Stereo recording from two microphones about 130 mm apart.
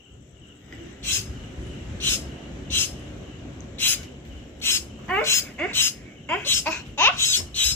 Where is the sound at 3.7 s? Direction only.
15° left (ahead or behind).